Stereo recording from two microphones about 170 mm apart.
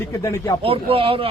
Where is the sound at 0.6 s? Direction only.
35° right (ahead or behind).